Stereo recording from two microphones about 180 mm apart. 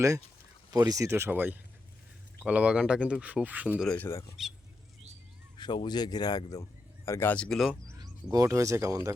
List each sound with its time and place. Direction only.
0.7 s speech: 20° right (ahead or behind)
3.8 s speech: 10° left (ahead or behind)
5.5 s speech: 25° left (ahead or behind); by 7.9 s centre (ahead or behind)
7.9 s speech: 20° right (ahead or behind)